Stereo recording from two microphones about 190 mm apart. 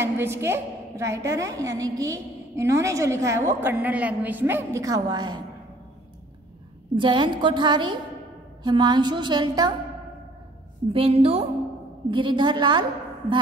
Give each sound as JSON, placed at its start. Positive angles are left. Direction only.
{"t": 0.0, "sound": "a woman's voice", "side_deg": -10}
{"t": 7.0, "sound": "a woman's voice", "side_deg": -25}
{"t": 10.9, "sound": "a woman's voice", "side_deg": -30}